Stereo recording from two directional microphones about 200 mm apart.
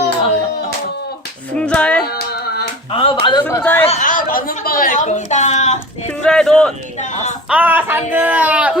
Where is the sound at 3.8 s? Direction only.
35° left (ahead or behind).